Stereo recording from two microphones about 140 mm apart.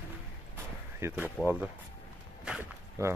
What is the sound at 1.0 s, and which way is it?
Speech, 20° right (ahead or behind).